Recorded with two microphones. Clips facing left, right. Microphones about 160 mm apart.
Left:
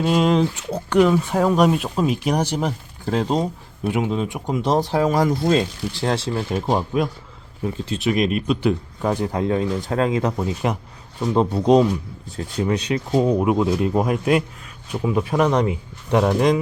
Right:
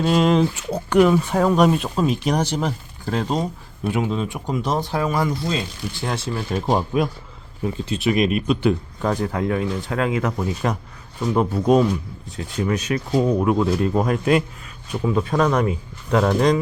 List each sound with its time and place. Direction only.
0.0 s speech: 5° left (ahead or behind)
1.1 s speech: centre (ahead or behind)
3.0 s speech: 25° left (ahead or behind)
4.6 s speech: 30° left (ahead or behind); by 5.6 s 50° left (ahead or behind)
6.1 s speech: 30° left (ahead or behind)
6.6 s speech: centre (ahead or behind)
9.0 s speech: 15° left (ahead or behind)
9.3 s speech: 25° left (ahead or behind)
13.1 s speech: 15° left (ahead or behind)